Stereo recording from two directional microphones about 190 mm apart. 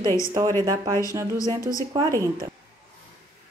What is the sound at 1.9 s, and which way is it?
Speech, 15° right (ahead or behind).